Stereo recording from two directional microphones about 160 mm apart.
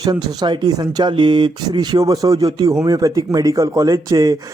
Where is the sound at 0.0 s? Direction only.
25° right (ahead or behind).